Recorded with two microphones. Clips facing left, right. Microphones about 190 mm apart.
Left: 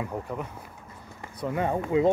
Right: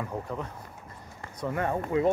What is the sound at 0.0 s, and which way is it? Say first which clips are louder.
Speech: left 1 dB; 10° left (ahead or behind).